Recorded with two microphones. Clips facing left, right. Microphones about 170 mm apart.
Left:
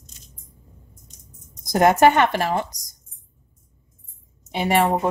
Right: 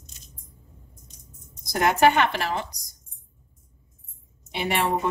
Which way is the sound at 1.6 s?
45° left (ahead or behind).